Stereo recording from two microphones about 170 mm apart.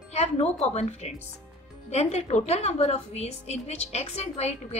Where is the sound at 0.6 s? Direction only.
40° left (ahead or behind).